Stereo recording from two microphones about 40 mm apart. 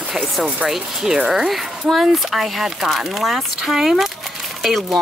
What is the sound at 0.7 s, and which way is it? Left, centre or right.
A woman's voice, centre.